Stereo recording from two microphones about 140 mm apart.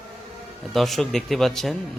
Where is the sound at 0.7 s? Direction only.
Centre (ahead or behind).